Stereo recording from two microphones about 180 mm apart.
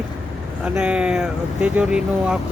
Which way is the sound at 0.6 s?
5° right (ahead or behind).